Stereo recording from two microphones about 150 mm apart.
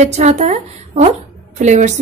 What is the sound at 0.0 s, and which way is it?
A woman's voice, 50° right (ahead or behind).